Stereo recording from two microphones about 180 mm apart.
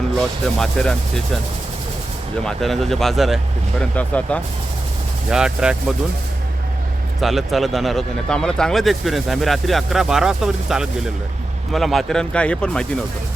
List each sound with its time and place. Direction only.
0.2 s speech: 5° left (ahead or behind)
2.4 s speech: centre (ahead or behind)
5.3 s speech: 5° right (ahead or behind)
7.2 s speech: centre (ahead or behind)